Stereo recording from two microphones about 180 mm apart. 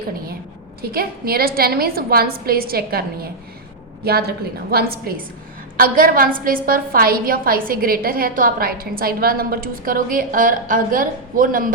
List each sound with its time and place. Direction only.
0.8 s a woman's voice: 55° right (ahead or behind)